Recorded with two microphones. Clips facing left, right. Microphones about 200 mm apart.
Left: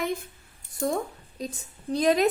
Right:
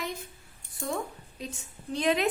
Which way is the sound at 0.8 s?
40° left (ahead or behind).